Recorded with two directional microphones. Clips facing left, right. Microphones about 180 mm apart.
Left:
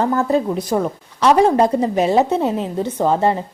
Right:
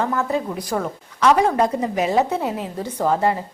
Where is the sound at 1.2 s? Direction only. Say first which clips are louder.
Left 3 dB; 30° left (ahead or behind).